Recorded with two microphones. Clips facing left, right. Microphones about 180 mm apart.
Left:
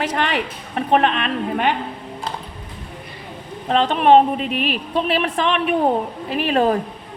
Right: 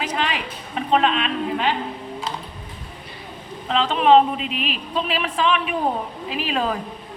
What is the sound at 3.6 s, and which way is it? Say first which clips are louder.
A woman's voice: left 2 dB; 50° left (ahead or behind).